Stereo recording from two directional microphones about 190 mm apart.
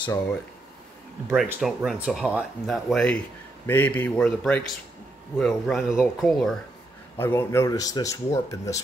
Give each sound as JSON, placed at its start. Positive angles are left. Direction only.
{"t": 1.3, "sound": "speech", "side_deg": 0}
{"t": 7.2, "sound": "speech", "side_deg": 10}